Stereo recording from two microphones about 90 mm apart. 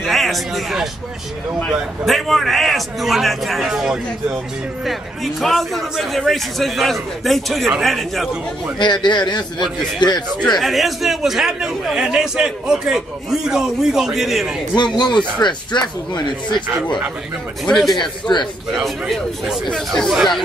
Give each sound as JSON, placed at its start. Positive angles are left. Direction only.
{"t": 0.0, "sound": "a man's voice", "side_deg": 0}
{"t": 2.0, "sound": "a man's voice", "side_deg": 0}
{"t": 9.0, "sound": "speech", "side_deg": 55}
{"t": 10.6, "sound": "a man's voice", "side_deg": 0}
{"t": 14.8, "sound": "speech", "side_deg": 55}
{"t": 17.6, "sound": "a man's voice", "side_deg": 5}
{"t": 18.3, "sound": "speech", "side_deg": 55}
{"t": 19.0, "sound": "a man's voice", "side_deg": 0}